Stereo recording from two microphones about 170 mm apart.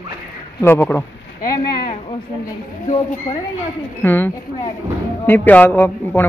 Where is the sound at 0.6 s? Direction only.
15° left (ahead or behind).